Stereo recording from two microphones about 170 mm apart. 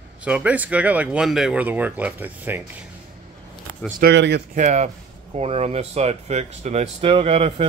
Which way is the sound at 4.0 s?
85° right.